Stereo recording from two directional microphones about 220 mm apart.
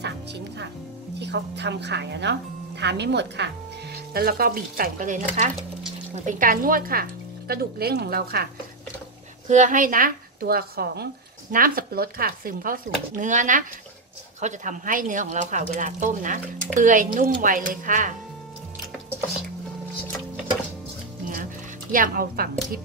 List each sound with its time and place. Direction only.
0.0 s music: 50° right (ahead or behind)
1.2 s speech: 50° right (ahead or behind)
9.5 s speech: 35° right (ahead or behind)
21.9 s speech: 40° right (ahead or behind)